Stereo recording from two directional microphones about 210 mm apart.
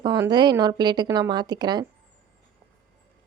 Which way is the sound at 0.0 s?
20° right (ahead or behind).